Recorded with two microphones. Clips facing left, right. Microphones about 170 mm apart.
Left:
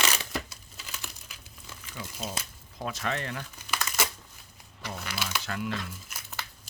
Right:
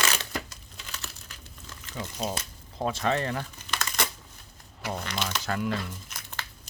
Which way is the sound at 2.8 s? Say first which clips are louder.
Right 6 dB; 30° right (ahead or behind).